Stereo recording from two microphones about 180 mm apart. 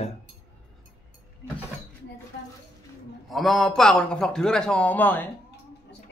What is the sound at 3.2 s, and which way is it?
A man's voice, centre (ahead or behind).